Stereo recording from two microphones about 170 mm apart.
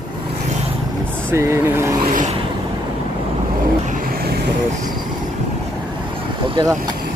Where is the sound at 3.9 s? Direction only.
55° right (ahead or behind).